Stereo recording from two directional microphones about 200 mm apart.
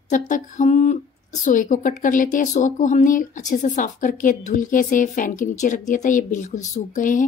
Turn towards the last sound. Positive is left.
turn(degrees=40)  # may be behind; listen again after turning